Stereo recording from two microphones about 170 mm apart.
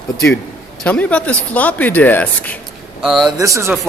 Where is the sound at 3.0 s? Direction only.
Centre (ahead or behind).